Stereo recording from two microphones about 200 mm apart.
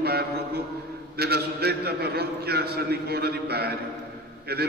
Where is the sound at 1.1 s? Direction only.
50° right (ahead or behind).